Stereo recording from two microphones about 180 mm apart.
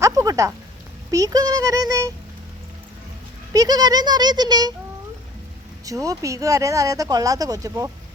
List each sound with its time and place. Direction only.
0.0 s a sound: 20° right (ahead or behind)
1.1 s speech: 20° right (ahead or behind)
3.5 s speech: 20° right (ahead or behind)
5.8 s speech: 20° right (ahead or behind)